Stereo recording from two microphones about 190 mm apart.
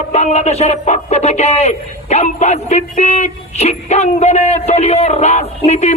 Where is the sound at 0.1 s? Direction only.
35° left (ahead or behind).